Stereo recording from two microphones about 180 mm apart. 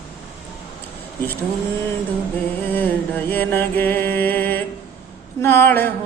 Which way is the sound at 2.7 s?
10° left (ahead or behind).